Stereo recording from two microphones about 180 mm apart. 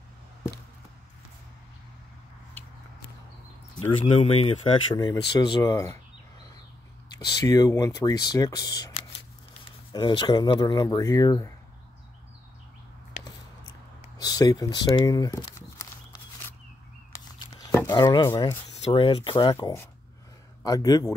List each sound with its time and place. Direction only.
4.0 s speech: 35° left (ahead or behind)
4.9 s speech: 20° left (ahead or behind)
7.2 s speech: 20° left (ahead or behind)
14.2 s speech: 20° left (ahead or behind)
15.8 s a sound: 15° left (ahead or behind)
17.9 s speech: 20° left (ahead or behind)
19.5 s speech: 15° left (ahead or behind)